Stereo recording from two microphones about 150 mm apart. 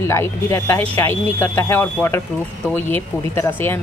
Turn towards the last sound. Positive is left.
turn(degrees=15)  # may be behind; listen again after turning